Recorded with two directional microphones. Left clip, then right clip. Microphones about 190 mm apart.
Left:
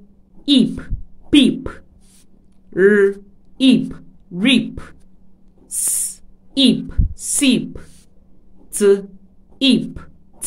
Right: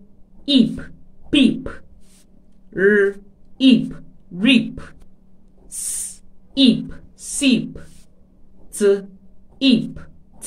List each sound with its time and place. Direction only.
0.4 s a sound: 40° left (ahead or behind)
2.7 s a woman's voice: 40° left (ahead or behind)
6.5 s a woman's voice: 40° left (ahead or behind)